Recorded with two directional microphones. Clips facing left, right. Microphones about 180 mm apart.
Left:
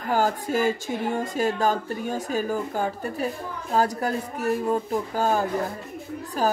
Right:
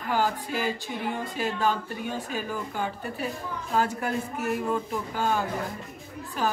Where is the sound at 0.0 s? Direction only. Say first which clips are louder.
Left 3 dB; 45° left (ahead or behind).